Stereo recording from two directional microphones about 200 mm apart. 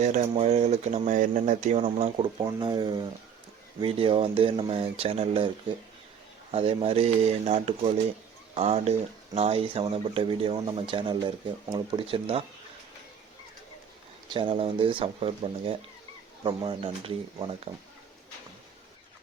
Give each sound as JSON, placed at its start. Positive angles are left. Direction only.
{"t": 0.0, "sound": "speech", "side_deg": -35}
{"t": 2.4, "sound": "speech", "side_deg": -20}
{"t": 14.3, "sound": "speech", "side_deg": -25}